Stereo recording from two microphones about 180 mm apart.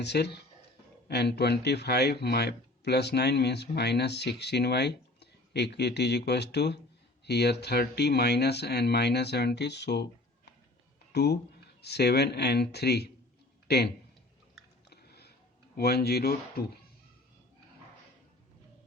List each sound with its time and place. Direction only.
0.0 s speech: 70° left (ahead or behind)
11.1 s speech: 65° left (ahead or behind)
14.8 s a sound: 65° left (ahead or behind)
15.7 s speech: 60° left (ahead or behind)